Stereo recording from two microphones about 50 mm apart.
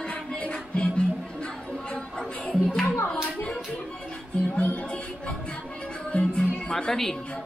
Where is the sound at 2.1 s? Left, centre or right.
Centre.